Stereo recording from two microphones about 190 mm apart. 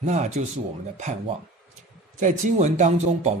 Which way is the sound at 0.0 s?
40° right (ahead or behind).